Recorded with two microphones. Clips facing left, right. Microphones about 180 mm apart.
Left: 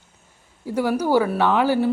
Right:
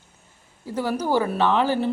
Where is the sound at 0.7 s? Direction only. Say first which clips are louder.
Left 4 dB; 10° left (ahead or behind).